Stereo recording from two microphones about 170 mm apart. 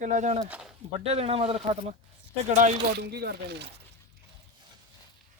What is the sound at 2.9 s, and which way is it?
Speech, 75° right (ahead or behind).